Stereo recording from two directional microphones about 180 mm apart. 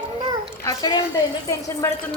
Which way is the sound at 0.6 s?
20° left (ahead or behind).